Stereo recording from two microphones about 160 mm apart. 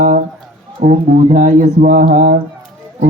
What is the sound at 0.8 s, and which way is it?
Speech, 50° right (ahead or behind).